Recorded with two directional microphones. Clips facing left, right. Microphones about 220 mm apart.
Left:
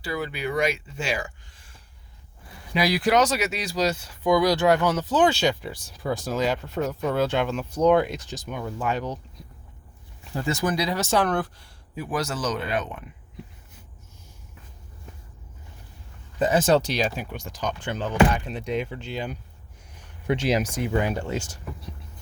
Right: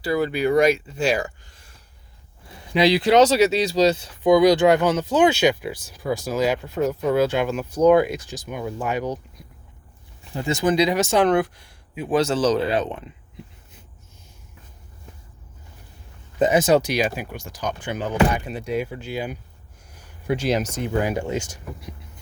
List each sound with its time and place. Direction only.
0.0 s speech: 40° right (ahead or behind)
2.7 s speech: 25° right (ahead or behind)
10.6 s speech: 20° right (ahead or behind)
12.0 s speech: 25° right (ahead or behind)
16.4 s speech: 15° right (ahead or behind)
19.9 s a sound: centre (ahead or behind)
21.1 s speech: 10° right (ahead or behind)